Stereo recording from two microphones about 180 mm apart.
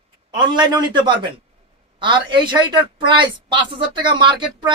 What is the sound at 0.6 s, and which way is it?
A woman's voice, 25° right (ahead or behind).